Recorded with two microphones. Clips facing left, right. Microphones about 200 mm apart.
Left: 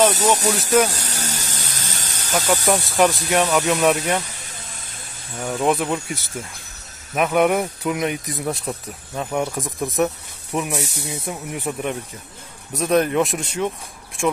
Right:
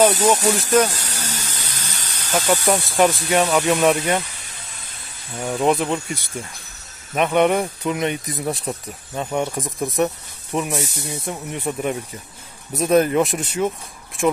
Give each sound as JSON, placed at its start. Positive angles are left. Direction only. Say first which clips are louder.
{"t": 0.1, "sound": "speech", "louder": "right 2 dB", "side_deg": -40}
{"t": 0.5, "sound": "speech", "louder": "right 1 dB", "side_deg": 0}
{"t": 1.2, "sound": "a sound", "louder": "left 1 dB", "side_deg": 45}
{"t": 2.4, "sound": "speech", "louder": "even", "side_deg": -5}
{"t": 5.5, "sound": "speech", "louder": "right 1 dB", "side_deg": 0}